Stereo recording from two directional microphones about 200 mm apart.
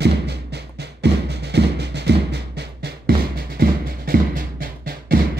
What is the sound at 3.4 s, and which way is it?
Music, 50° right (ahead or behind).